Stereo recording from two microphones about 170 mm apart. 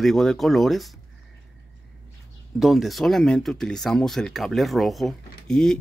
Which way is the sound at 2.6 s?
Centre (ahead or behind).